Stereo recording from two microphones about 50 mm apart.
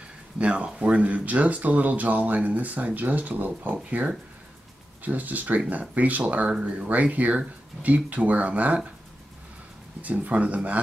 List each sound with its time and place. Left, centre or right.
0.4 s speech: right
3.7 s speech: right
10.0 s speech: right